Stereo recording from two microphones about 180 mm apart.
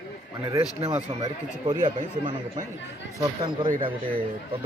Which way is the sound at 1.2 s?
25° right (ahead or behind).